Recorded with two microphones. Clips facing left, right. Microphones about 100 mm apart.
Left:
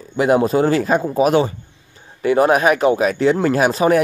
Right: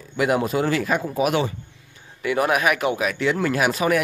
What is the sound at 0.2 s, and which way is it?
Speech, 30° left (ahead or behind).